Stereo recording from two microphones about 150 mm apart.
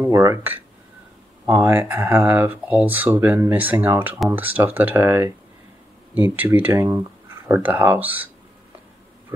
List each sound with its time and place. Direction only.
0.0 s speech: 20° right (ahead or behind)